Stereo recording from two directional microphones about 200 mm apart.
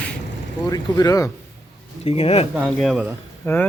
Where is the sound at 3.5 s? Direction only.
10° left (ahead or behind).